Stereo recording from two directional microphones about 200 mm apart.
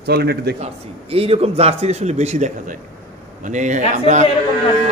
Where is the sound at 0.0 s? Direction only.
55° right (ahead or behind).